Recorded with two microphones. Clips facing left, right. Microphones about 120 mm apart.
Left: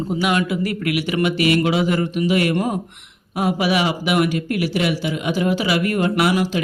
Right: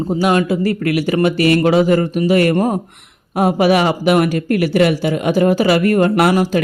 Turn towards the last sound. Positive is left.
turn(degrees=-45)  # may be behind; listen again after turning